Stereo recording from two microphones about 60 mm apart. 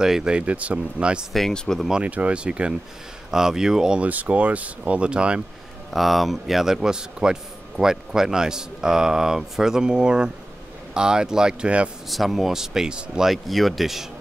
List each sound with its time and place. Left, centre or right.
0.0 s a man's voice: centre
4.0 s speech: right
5.9 s a man's voice: centre
12.1 s a man's voice: centre
13.3 s speech: centre